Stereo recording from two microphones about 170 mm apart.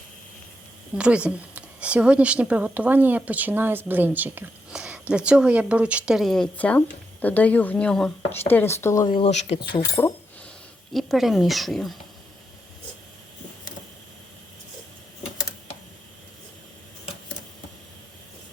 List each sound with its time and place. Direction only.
0.9 s a woman's voice: 5° right (ahead or behind); by 9.1 s 20° left (ahead or behind)
9.1 s speech: 40° left (ahead or behind)
10.0 s speech: 15° left (ahead or behind)
10.9 s speech: centre (ahead or behind)